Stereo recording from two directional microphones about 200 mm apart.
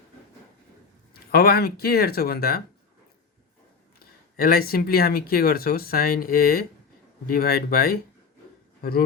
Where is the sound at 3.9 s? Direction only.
50° left (ahead or behind).